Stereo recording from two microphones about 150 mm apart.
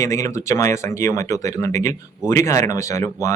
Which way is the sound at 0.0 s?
20° left (ahead or behind).